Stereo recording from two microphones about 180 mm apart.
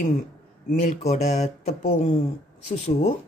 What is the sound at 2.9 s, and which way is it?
Speech, 35° left (ahead or behind).